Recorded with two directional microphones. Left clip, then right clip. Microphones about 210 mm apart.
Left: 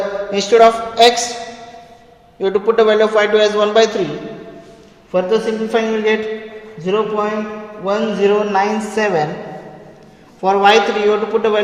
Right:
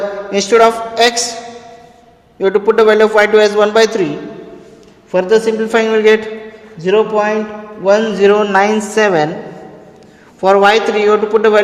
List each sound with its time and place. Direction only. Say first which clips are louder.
0.3 s a man's voice: right 1 dB; 35° right (ahead or behind)
2.4 s a man's voice: right 3 dB; 35° right (ahead or behind)
5.1 s a man's voice: right 4 dB; 45° right (ahead or behind)
10.4 s a man's voice: right 2 dB; 45° right (ahead or behind)